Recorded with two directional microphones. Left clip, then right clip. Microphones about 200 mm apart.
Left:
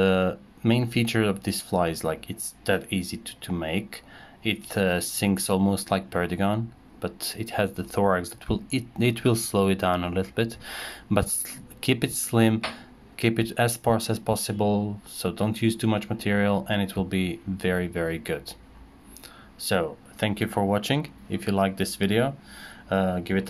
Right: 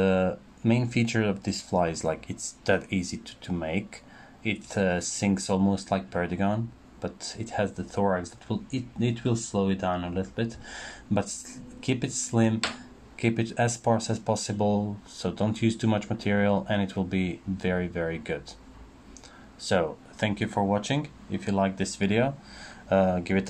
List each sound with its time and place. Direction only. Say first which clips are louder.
0.0 s speech: left 2 dB; 10° left (ahead or behind)
19.6 s speech: even; 5° left (ahead or behind)